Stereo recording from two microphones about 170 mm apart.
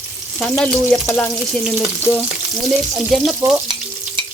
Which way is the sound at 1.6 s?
5° right (ahead or behind).